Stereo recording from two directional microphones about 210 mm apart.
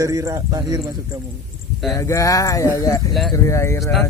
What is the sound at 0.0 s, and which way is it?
Speech, 15° right (ahead or behind).